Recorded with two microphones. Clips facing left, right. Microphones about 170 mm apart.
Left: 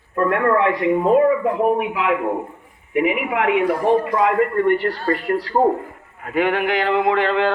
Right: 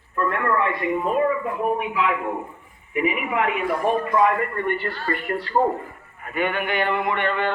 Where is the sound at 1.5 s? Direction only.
65° left (ahead or behind).